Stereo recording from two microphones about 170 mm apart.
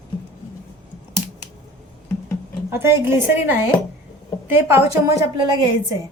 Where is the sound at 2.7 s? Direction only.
15° right (ahead or behind).